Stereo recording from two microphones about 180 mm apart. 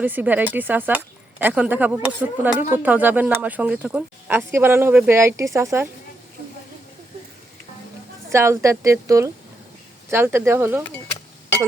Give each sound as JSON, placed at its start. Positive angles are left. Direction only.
{"t": 0.0, "sound": "speech", "side_deg": -10}
{"t": 8.3, "sound": "speech", "side_deg": -15}